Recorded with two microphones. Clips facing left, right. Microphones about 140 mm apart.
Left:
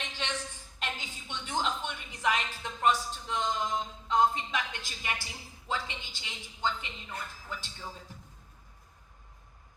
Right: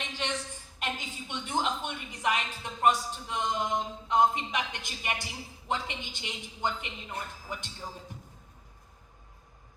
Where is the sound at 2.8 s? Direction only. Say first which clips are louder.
Right 2 dB; 10° right (ahead or behind).